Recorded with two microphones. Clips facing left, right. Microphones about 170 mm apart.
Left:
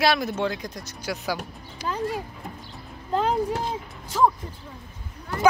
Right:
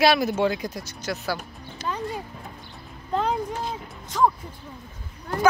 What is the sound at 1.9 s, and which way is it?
Speech, centre (ahead or behind).